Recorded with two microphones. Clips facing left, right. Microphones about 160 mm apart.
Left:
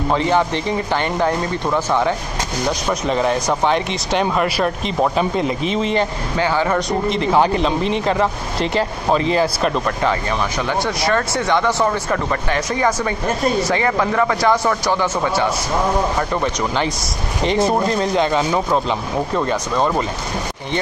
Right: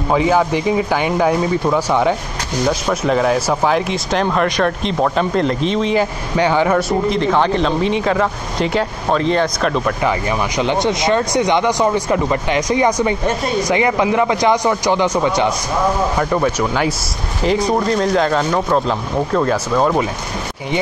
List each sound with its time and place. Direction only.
0.1 s speech: 5° right (ahead or behind)
6.3 s speech: 15° right (ahead or behind)
6.7 s speech: centre (ahead or behind)
10.6 s speech: 20° right (ahead or behind)
16.2 s speech: 5° right (ahead or behind)